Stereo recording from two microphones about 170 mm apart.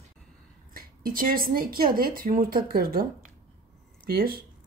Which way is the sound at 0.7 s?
60° right (ahead or behind).